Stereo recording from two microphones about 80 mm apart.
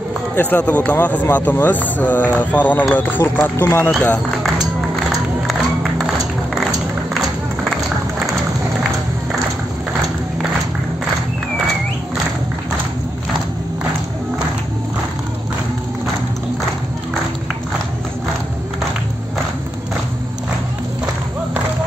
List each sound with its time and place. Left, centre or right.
0.4 s speech: left